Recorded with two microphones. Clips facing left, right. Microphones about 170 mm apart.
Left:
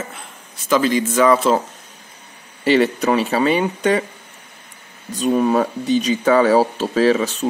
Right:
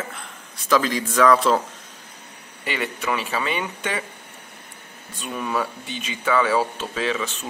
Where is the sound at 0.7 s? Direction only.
Centre (ahead or behind).